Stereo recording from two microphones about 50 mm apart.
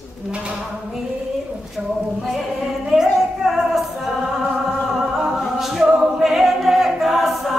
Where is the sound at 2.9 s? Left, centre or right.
Centre.